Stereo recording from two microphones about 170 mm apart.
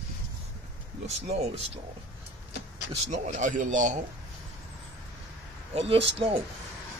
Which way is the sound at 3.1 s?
45° right (ahead or behind).